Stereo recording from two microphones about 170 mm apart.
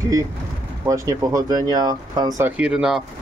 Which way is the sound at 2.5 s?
5° right (ahead or behind).